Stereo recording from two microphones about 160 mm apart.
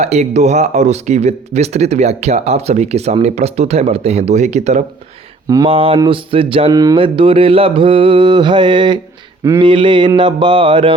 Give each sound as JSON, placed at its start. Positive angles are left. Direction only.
{"t": 0.0, "sound": "speech", "side_deg": -45}
{"t": 5.6, "sound": "mantra", "side_deg": -35}